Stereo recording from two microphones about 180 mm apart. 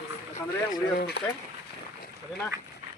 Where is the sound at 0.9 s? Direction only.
60° left (ahead or behind).